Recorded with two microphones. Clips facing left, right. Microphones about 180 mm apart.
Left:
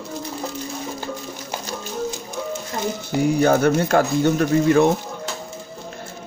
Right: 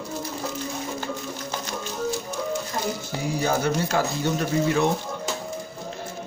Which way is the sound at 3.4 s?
55° left (ahead or behind).